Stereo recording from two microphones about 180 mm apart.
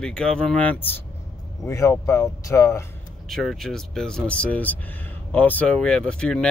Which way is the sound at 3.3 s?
Centre (ahead or behind).